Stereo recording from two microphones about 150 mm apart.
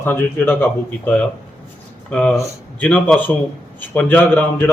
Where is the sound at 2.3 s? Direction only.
20° left (ahead or behind).